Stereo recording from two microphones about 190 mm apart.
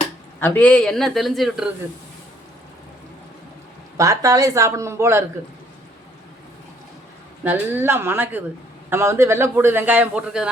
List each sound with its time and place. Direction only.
0.3 s a man's voice: 10° left (ahead or behind)
3.9 s a man's voice: 15° right (ahead or behind)
7.4 s a man's voice: 10° right (ahead or behind)